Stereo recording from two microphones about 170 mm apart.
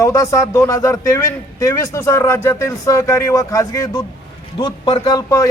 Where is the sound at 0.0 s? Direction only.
20° left (ahead or behind).